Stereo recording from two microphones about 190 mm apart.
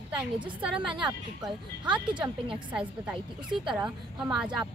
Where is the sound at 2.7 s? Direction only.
5° right (ahead or behind).